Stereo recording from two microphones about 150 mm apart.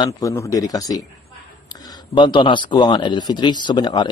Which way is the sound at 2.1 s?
30° left (ahead or behind).